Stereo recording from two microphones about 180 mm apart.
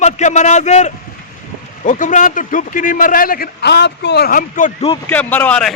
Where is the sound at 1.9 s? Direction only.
45° left (ahead or behind).